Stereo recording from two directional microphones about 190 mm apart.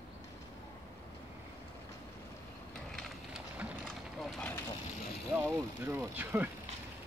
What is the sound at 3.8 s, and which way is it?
Vehicle, 5° left (ahead or behind).